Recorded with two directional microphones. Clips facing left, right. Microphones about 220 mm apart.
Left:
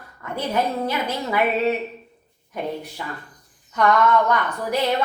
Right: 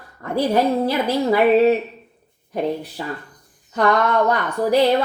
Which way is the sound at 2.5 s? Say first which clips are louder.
Right 5 dB; 35° right (ahead or behind).